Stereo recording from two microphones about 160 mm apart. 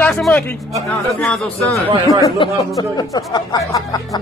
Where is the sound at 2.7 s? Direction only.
25° left (ahead or behind).